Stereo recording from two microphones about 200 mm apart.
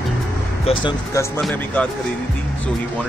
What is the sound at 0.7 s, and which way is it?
Speech, 25° left (ahead or behind).